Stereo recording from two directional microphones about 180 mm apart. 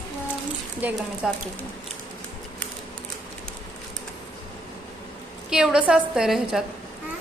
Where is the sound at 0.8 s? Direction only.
10° right (ahead or behind).